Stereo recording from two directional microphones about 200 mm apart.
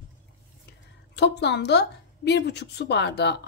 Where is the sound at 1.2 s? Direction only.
55° left (ahead or behind).